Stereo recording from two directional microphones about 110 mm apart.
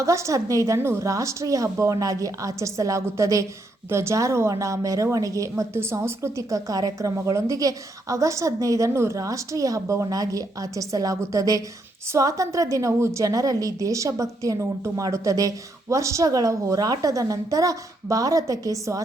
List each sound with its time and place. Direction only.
0.0 s a woman's voice: 30° right (ahead or behind)